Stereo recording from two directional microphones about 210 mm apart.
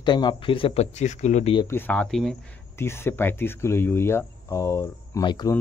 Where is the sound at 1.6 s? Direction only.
10° left (ahead or behind).